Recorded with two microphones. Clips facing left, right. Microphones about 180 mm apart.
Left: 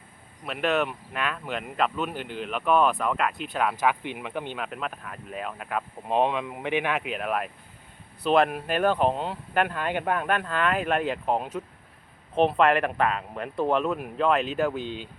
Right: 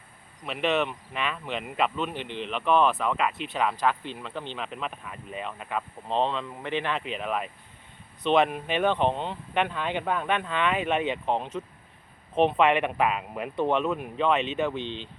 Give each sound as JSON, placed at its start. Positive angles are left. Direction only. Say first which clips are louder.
{"t": 0.4, "sound": "speech", "louder": "left 1 dB", "side_deg": 0}
{"t": 6.1, "sound": "speech", "louder": "left 3 dB", "side_deg": 15}